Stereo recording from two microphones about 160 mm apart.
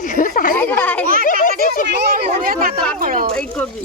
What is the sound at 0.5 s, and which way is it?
Speech, 10° left (ahead or behind).